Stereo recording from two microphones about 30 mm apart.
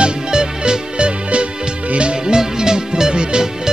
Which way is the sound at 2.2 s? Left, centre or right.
Right.